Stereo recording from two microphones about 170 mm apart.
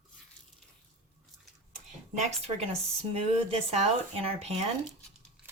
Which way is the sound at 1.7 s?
45° right (ahead or behind).